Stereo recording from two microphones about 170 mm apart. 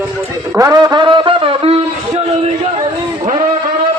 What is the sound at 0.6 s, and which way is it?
Wind instrument, 20° right (ahead or behind).